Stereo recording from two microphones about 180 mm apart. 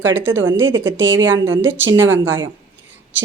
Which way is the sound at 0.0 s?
10° right (ahead or behind).